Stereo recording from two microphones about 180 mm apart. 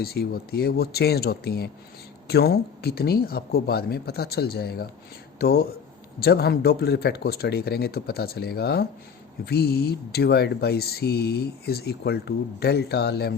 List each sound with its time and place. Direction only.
0.0 s speech: 60° left (ahead or behind)